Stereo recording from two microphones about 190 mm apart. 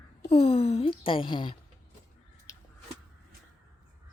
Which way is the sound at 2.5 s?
15° left (ahead or behind).